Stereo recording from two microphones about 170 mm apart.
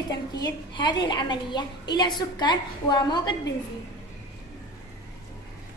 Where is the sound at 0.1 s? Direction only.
25° left (ahead or behind).